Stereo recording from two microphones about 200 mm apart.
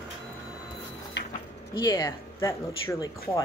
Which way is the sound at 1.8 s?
20° left (ahead or behind).